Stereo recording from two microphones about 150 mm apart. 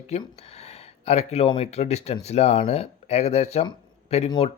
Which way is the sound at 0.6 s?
45° left (ahead or behind).